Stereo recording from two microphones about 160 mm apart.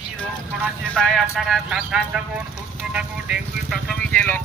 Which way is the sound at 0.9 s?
5° left (ahead or behind).